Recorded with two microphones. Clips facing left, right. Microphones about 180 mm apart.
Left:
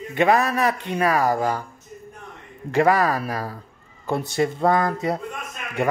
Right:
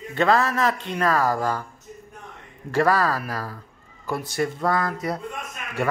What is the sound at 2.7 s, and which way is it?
Speech, 15° left (ahead or behind).